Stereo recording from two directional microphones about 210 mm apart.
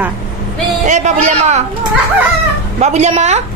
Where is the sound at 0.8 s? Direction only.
35° right (ahead or behind).